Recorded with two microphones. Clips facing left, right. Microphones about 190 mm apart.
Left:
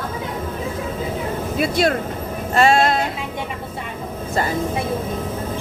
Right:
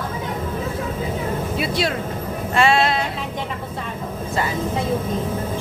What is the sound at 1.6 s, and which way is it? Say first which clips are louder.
A woman's voice: left 7 dB; 50° left (ahead or behind).